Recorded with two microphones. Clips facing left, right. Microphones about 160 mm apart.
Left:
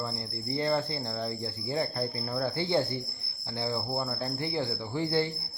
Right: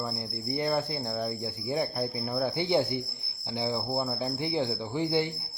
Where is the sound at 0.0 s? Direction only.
15° right (ahead or behind).